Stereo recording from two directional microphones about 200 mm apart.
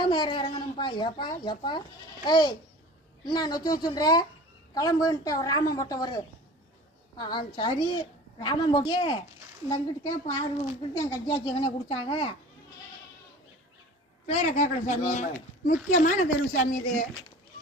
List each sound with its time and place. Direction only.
0.0 s a woman's voice: 25° left (ahead or behind)
14.3 s speech: 35° left (ahead or behind)